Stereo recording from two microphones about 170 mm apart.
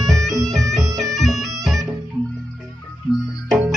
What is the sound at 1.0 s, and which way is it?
Bagpipes, centre (ahead or behind).